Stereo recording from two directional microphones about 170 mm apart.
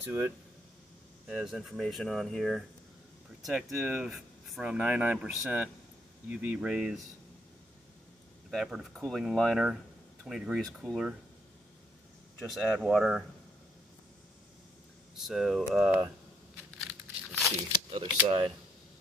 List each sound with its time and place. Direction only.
0.0 s speech: 15° right (ahead or behind)
1.2 s speech: centre (ahead or behind)
8.5 s speech: centre (ahead or behind)
12.4 s speech: centre (ahead or behind)
15.1 s speech: centre (ahead or behind)
17.3 s tearing: centre (ahead or behind)
17.9 s speech: 30° right (ahead or behind)